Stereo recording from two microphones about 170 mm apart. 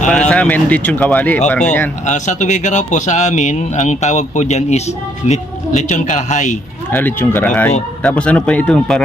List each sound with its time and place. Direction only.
0.3 s speech: 5° left (ahead or behind)
2.0 s speech: 45° left (ahead or behind)
6.9 s speech: 10° left (ahead or behind)